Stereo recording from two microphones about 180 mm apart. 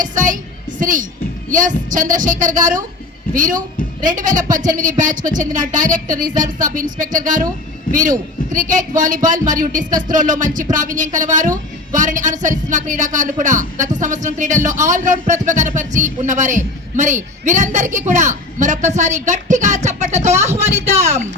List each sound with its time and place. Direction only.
0.0 s speech: 45° right (ahead or behind)